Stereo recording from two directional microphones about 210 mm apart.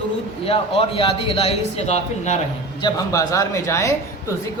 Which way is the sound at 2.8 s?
15° left (ahead or behind).